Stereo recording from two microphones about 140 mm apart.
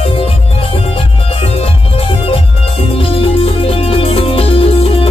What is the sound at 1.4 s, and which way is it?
Music, 40° left (ahead or behind).